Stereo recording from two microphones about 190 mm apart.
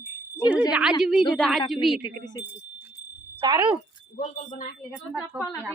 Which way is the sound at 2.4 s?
10° right (ahead or behind).